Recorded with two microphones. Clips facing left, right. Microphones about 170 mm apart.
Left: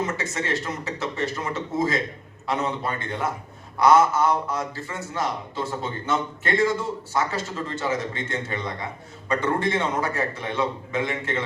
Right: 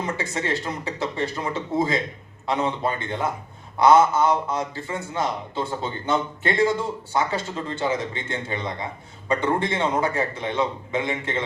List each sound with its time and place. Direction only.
0.1 s a man's voice: 30° right (ahead or behind)